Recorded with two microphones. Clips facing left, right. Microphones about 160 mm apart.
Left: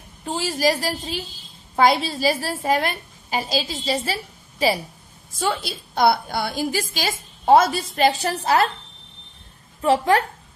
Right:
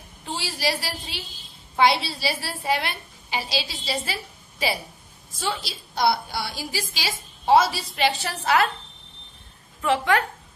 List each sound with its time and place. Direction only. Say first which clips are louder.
0.2 s a woman's voice: left 6 dB; 45° left (ahead or behind)
5.4 s a woman's voice: left 5 dB; 50° left (ahead or behind); by 8.6 s 35° left (ahead or behind)
9.8 s a woman's voice: left 4 dB; 35° left (ahead or behind)